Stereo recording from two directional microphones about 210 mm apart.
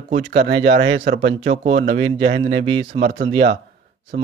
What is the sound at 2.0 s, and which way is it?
Speech, 25° right (ahead or behind).